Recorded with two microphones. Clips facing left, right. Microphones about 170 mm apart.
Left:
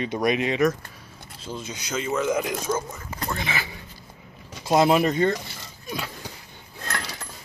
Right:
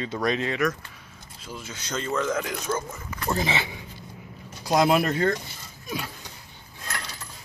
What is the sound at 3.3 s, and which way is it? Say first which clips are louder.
Speech: right 5 dB; 30° right (ahead or behind).